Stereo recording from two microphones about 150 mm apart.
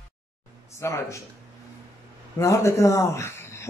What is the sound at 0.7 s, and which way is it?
Speech, 20° left (ahead or behind).